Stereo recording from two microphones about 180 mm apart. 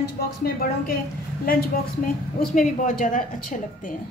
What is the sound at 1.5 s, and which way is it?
A woman's voice, 55° left (ahead or behind).